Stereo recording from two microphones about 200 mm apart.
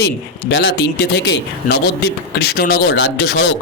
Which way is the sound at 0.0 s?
60° left (ahead or behind).